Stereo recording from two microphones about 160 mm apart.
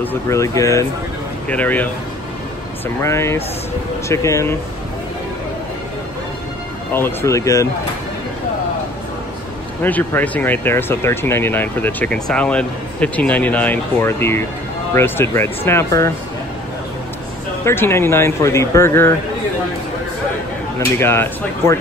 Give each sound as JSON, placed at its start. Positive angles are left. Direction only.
{"t": 0.0, "sound": "speech", "side_deg": 15}
{"t": 3.0, "sound": "speech", "side_deg": 15}
{"t": 6.9, "sound": "speech", "side_deg": 15}
{"t": 9.8, "sound": "speech", "side_deg": 10}
{"t": 17.6, "sound": "speech", "side_deg": 15}
{"t": 21.0, "sound": "speech", "side_deg": 15}